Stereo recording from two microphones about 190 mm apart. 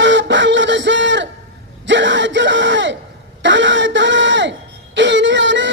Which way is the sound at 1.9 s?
75° right (ahead or behind).